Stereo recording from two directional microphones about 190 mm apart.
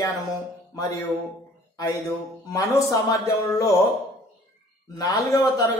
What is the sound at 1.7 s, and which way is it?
Speech, 15° left (ahead or behind).